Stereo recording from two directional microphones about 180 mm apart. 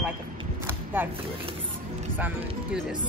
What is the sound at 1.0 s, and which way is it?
Speech, 10° right (ahead or behind).